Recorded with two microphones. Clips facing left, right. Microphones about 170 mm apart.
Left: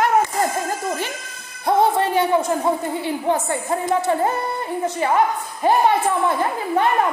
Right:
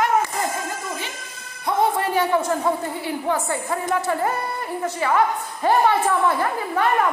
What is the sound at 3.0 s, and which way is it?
A woman's voice, 20° left (ahead or behind).